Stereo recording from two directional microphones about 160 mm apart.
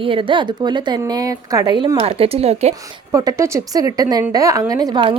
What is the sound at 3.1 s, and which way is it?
A woman's voice, 20° right (ahead or behind).